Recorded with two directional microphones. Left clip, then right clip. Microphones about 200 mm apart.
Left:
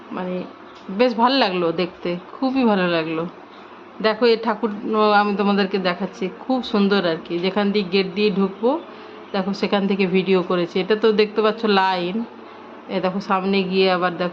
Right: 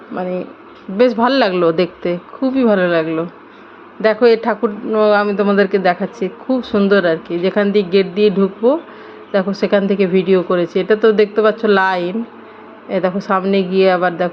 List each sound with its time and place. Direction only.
0.9 s a woman's voice: 15° right (ahead or behind)
2.4 s a woman's voice: 10° right (ahead or behind)